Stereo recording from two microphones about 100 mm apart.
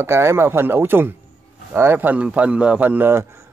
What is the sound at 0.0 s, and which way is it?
A man's voice, 25° right (ahead or behind).